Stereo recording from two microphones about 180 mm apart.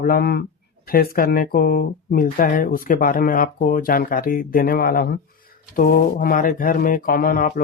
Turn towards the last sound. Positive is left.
turn(degrees=50)  # may be behind; listen again after turning